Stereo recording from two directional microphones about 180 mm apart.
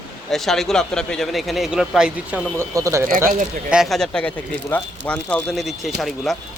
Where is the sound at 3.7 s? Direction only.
Centre (ahead or behind).